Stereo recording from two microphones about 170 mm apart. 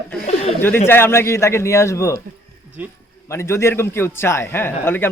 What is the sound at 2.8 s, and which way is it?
Speech, 10° right (ahead or behind).